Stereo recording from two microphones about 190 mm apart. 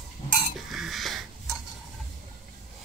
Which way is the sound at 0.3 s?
45° left (ahead or behind).